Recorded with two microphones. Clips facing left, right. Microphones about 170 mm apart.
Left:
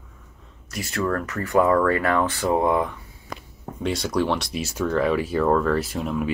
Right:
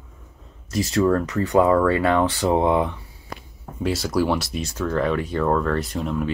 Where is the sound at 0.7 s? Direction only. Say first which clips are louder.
Right 6 dB; 25° right (ahead or behind).